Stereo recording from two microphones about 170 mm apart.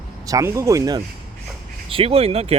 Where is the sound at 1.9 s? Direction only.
35° right (ahead or behind).